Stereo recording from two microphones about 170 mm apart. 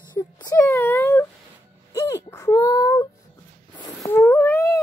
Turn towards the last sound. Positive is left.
turn(degrees=15)  # may be behind; listen again after turning